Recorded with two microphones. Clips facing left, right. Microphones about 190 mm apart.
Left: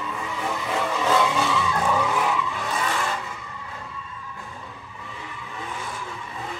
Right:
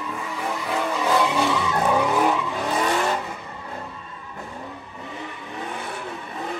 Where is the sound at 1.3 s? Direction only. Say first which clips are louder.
Right 2 dB; 15° right (ahead or behind).